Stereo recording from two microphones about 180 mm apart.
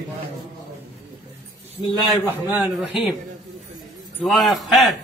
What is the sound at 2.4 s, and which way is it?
Speech, 10° right (ahead or behind).